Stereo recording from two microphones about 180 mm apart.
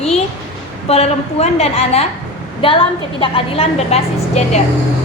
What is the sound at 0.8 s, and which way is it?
A woman's voice, 35° left (ahead or behind).